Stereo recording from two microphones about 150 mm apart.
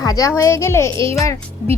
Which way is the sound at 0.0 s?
25° left (ahead or behind).